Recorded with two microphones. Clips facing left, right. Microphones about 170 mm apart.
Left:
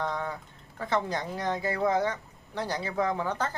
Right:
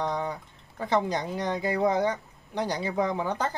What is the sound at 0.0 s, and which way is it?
Speech, 15° right (ahead or behind).